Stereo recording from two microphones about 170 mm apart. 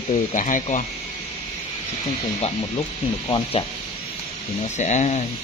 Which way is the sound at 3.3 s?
25° left (ahead or behind).